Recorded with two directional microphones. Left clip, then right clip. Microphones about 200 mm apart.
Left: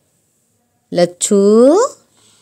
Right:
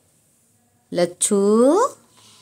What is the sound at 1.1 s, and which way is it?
Speech, 30° left (ahead or behind).